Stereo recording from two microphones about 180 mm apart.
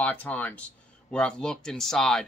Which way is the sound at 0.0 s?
10° left (ahead or behind).